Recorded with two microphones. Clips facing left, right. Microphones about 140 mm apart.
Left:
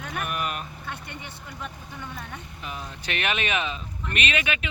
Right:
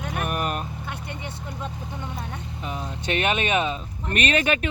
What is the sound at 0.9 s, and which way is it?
Speech, 15° right (ahead or behind).